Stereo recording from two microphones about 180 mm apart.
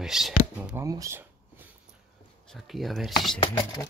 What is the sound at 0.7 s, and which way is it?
Speech, 20° right (ahead or behind).